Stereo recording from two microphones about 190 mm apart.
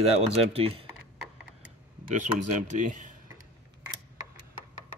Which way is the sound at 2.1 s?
40° right (ahead or behind).